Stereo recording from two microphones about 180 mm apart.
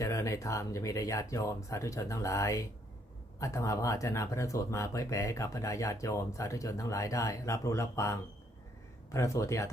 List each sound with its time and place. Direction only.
0.0 s speech: 15° left (ahead or behind)